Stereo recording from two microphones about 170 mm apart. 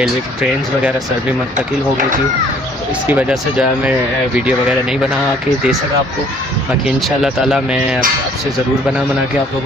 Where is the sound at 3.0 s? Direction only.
10° right (ahead or behind).